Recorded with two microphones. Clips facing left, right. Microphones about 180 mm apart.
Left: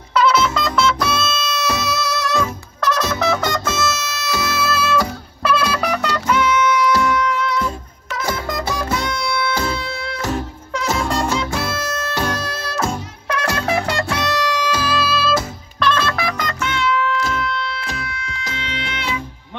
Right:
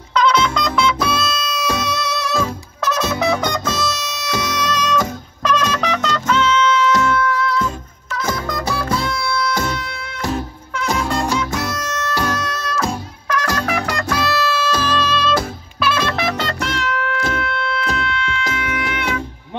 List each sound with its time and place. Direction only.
0.1 s music: 5° left (ahead or behind); by 10.3 s 30° left (ahead or behind)
12.4 s music: 30° left (ahead or behind); by 15.3 s 5° left (ahead or behind)
15.8 s music: 10° right (ahead or behind)
16.1 s music: 25° right (ahead or behind); by 19.2 s 55° right (ahead or behind)